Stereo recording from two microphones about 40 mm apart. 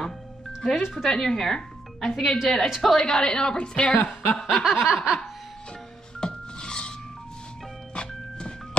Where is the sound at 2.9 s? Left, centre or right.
Centre.